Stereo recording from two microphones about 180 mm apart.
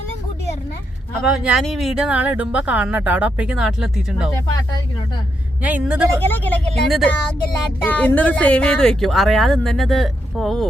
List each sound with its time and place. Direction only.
1.2 s speech: centre (ahead or behind)
5.6 s speech: 5° right (ahead or behind)
6.1 s speech: 10° left (ahead or behind)